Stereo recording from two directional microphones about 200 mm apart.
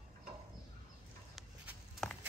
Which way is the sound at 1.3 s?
Centre (ahead or behind).